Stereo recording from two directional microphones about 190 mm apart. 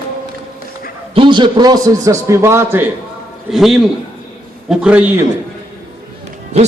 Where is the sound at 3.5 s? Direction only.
Centre (ahead or behind).